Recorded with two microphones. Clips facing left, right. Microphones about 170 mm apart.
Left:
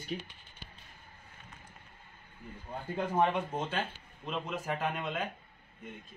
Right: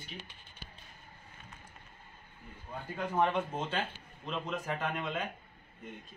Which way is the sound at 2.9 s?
15° left (ahead or behind).